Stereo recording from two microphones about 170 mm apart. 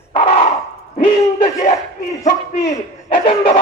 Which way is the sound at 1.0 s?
30° left (ahead or behind).